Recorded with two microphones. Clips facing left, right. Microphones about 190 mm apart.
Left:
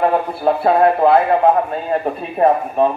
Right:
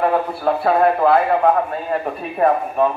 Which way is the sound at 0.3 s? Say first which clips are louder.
Left 2 dB; 25° left (ahead or behind).